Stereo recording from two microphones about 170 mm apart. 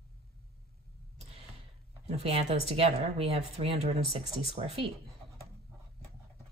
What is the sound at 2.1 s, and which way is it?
Speech, 35° right (ahead or behind).